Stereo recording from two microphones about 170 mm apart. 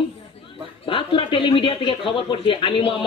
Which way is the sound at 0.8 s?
30° left (ahead or behind).